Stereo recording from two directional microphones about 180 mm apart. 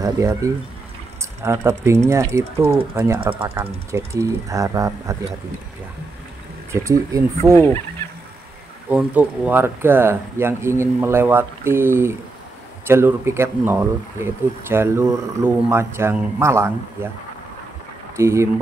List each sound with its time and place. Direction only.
0.0 s speech: 15° right (ahead or behind)
6.7 s speech: 15° right (ahead or behind)
8.8 s speech: 10° right (ahead or behind)
18.1 s speech: 15° right (ahead or behind)